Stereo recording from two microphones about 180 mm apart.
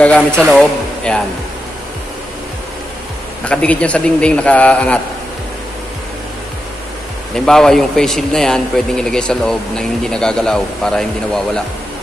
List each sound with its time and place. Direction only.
0.0 s speech: 5° left (ahead or behind)
3.4 s a man's voice: 5° left (ahead or behind)
7.3 s speech: 5° left (ahead or behind)